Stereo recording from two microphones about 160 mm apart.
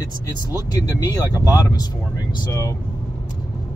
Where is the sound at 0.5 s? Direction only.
25° left (ahead or behind).